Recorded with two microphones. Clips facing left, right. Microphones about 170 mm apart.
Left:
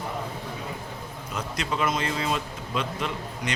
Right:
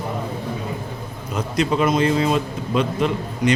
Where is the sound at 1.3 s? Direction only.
20° right (ahead or behind).